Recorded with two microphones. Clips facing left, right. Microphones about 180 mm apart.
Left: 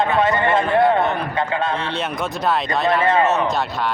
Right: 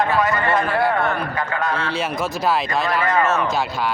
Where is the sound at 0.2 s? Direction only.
25° left (ahead or behind).